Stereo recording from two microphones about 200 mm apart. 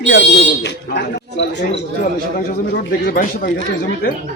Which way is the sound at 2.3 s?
50° left (ahead or behind).